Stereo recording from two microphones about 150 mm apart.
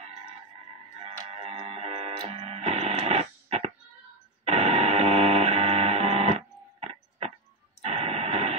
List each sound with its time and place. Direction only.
0.0 s a sound: 50° right (ahead or behind)
0.9 s music: 45° right (ahead or behind)
7.8 s radio: 40° right (ahead or behind)